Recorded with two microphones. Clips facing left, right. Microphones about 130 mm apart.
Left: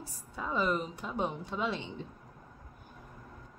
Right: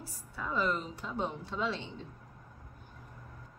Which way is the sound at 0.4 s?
20° left (ahead or behind).